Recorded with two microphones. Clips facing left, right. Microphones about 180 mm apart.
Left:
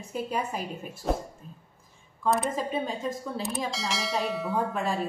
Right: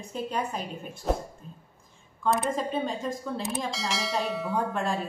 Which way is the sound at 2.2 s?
5° left (ahead or behind).